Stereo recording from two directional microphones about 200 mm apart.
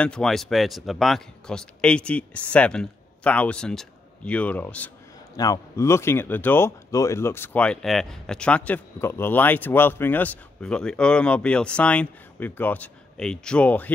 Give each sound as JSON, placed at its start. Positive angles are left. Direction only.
{"t": 0.0, "sound": "speech", "side_deg": 5}